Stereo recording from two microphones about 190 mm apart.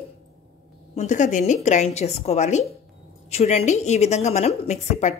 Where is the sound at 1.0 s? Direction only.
40° left (ahead or behind).